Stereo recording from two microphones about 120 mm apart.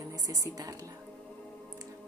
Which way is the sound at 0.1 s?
30° right (ahead or behind).